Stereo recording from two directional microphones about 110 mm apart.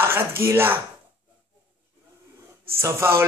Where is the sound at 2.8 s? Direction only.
25° right (ahead or behind).